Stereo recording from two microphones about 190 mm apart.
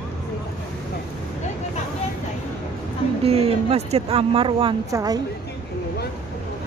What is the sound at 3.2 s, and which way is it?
Speech, 30° right (ahead or behind).